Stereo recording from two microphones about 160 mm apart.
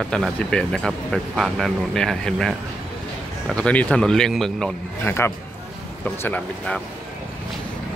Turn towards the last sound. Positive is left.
turn(degrees=10)  # may be behind; listen again after turning